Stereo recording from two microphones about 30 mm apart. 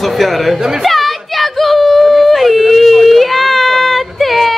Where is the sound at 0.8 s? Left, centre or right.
Centre.